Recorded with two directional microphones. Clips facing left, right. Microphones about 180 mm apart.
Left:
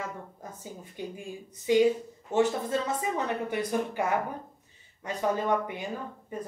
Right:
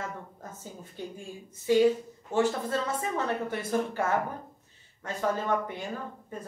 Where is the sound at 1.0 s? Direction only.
15° left (ahead or behind).